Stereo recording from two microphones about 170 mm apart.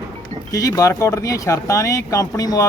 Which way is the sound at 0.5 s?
20° left (ahead or behind).